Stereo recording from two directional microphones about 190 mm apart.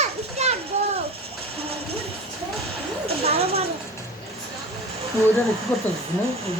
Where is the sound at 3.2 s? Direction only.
30° right (ahead or behind).